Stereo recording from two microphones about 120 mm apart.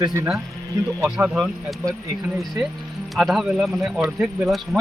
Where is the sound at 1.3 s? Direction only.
Centre (ahead or behind).